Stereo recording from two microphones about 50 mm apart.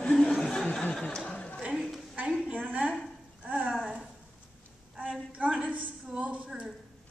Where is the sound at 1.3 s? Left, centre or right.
Left.